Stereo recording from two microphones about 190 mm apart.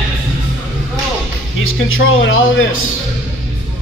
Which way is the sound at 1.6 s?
90° left.